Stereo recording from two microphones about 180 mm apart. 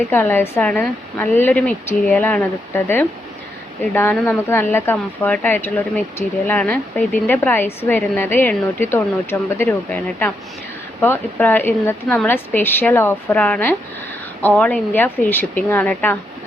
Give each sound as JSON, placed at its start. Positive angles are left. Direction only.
{"t": 0.1, "sound": "speech", "side_deg": 10}